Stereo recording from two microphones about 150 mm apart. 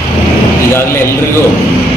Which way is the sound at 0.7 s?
20° left (ahead or behind).